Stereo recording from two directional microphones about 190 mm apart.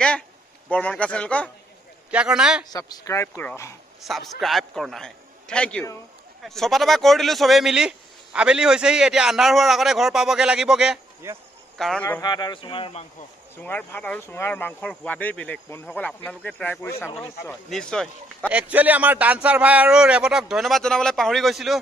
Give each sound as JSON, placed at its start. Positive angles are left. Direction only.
{"t": 0.7, "sound": "speech", "side_deg": 5}
{"t": 2.0, "sound": "speech", "side_deg": -5}
{"t": 2.7, "sound": "speech", "side_deg": 20}
{"t": 4.0, "sound": "speech", "side_deg": 0}
{"t": 11.8, "sound": "speech", "side_deg": 5}
{"t": 12.2, "sound": "speech", "side_deg": 20}
{"t": 13.6, "sound": "speech", "side_deg": 10}
{"t": 18.5, "sound": "speech", "side_deg": -5}